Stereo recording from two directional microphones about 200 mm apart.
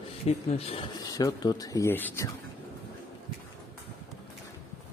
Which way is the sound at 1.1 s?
20° left (ahead or behind).